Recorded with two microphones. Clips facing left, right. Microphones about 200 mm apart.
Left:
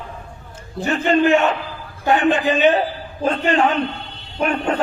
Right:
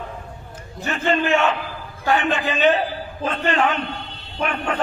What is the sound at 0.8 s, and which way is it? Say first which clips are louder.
Speech: left 6 dB; 35° left (ahead or behind).